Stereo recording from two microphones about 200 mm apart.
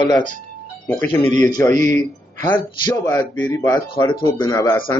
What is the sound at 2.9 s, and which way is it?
Speech, 15° left (ahead or behind).